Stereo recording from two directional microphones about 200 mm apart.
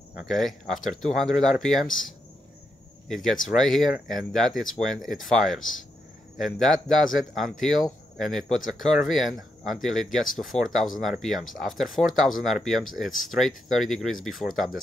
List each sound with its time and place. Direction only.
0.1 s speech: centre (ahead or behind)
3.1 s speech: centre (ahead or behind)
5.6 s speech: 80° left
6.3 s speech: centre (ahead or behind)